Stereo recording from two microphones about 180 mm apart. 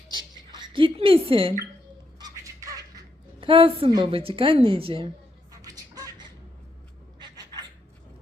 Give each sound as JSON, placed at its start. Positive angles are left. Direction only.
{"t": 0.5, "sound": "a woman's voice", "side_deg": -30}
{"t": 2.4, "sound": "music", "side_deg": -20}
{"t": 3.4, "sound": "a woman's voice", "side_deg": -30}
{"t": 5.5, "sound": "a sound", "side_deg": -20}